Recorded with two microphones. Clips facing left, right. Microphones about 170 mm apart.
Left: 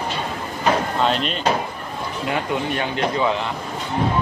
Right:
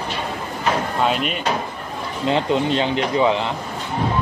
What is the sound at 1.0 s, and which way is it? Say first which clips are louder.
Speech: even; 5° right (ahead or behind).